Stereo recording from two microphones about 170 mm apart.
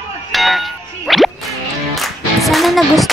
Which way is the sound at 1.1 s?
Centre (ahead or behind).